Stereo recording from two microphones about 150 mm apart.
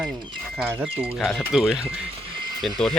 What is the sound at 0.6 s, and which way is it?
A man's voice, 15° right (ahead or behind).